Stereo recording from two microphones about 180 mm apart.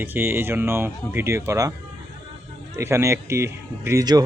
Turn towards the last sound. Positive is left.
turn(degrees=-20)  # may be behind; listen again after turning